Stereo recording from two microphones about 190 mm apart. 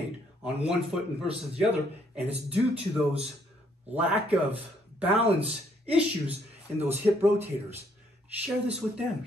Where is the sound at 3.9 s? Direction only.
10° right (ahead or behind).